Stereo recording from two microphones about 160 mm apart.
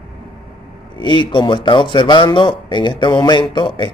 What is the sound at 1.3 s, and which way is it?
A man's voice, 30° left (ahead or behind).